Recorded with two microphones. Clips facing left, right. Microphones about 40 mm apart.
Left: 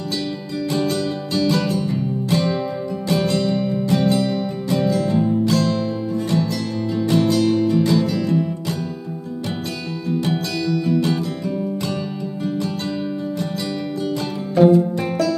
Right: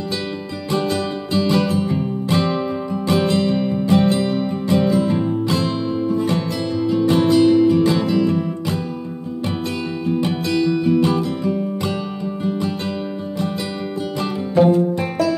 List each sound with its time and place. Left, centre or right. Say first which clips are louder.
0.7 s music: right 1 dB; right
10.0 s music: right 1 dB; right
14.6 s music: left 1 dB; centre